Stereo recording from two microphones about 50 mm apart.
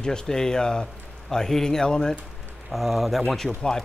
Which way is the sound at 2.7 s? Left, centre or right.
Centre.